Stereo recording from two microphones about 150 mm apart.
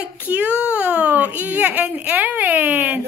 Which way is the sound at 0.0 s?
10° right (ahead or behind).